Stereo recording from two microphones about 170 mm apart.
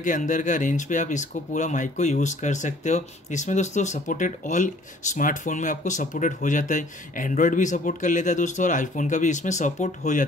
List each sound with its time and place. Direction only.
0.0 s speech: 50° left (ahead or behind)